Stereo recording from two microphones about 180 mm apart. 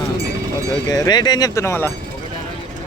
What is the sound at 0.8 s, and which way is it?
Speech, 20° left (ahead or behind).